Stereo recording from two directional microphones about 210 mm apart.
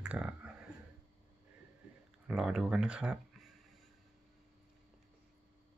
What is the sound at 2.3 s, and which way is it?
Speech, 5° right (ahead or behind).